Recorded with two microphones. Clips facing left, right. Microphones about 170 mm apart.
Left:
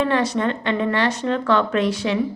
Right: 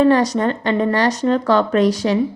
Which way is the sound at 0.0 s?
40° right (ahead or behind).